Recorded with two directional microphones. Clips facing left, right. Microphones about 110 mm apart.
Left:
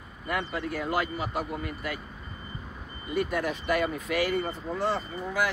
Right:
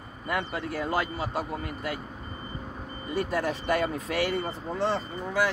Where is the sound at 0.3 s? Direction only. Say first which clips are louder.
Even; 30° right (ahead or behind).